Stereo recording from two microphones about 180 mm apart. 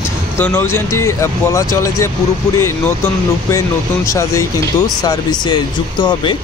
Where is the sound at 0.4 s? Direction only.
10° left (ahead or behind).